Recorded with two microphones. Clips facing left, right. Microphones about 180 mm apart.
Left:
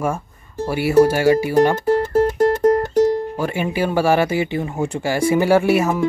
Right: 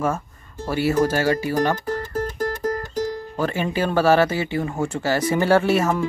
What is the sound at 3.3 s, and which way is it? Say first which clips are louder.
Speech: left 2 dB; 10° left (ahead or behind).